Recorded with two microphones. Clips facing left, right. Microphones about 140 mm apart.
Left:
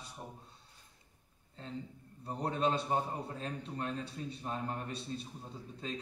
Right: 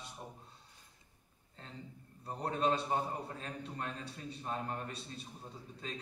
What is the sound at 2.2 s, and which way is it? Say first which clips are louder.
A man's voice: left 1 dB; 30° left (ahead or behind).